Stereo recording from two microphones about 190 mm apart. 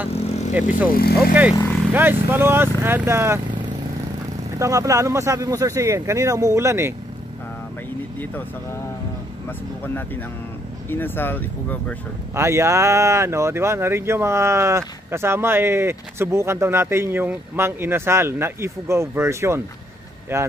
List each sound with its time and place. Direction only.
0.1 s vehicle: 35° left (ahead or behind)
0.9 s speech: 50° left (ahead or behind)
1.5 s speech: 10° left (ahead or behind)
1.9 s speech: 10° right (ahead or behind)
4.5 s speech: 15° right (ahead or behind)
10.9 s speech: 10° left (ahead or behind)
12.4 s speech: 15° right (ahead or behind)